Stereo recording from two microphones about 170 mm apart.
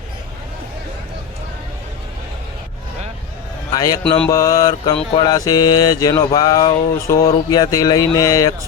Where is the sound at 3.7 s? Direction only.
20° left (ahead or behind).